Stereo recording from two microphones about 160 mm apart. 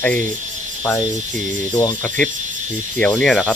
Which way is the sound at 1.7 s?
25° left (ahead or behind).